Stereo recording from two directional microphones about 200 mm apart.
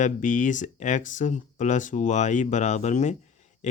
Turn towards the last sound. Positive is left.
turn(degrees=35)  # may be behind; listen again after turning